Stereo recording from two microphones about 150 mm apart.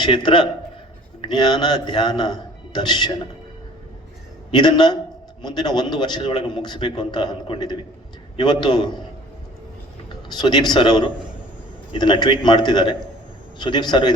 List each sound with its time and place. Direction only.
0.0 s a man's voice: 30° left (ahead or behind)
4.5 s a man's voice: 30° left (ahead or behind)
10.3 s a man's voice: 30° left (ahead or behind)